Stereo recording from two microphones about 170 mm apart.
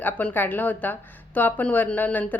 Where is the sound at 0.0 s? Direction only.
10° left (ahead or behind).